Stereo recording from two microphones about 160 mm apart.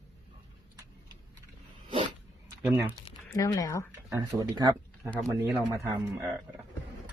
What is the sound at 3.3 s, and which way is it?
Speech, 20° left (ahead or behind).